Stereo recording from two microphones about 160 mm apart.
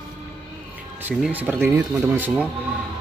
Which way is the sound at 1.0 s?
10° right (ahead or behind).